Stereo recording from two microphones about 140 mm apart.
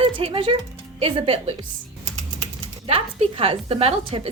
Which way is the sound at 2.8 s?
45° right (ahead or behind).